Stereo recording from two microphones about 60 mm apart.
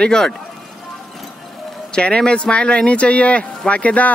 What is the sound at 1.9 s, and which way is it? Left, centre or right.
Speech, centre.